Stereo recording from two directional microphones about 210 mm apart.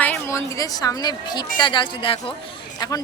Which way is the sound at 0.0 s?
10° left (ahead or behind).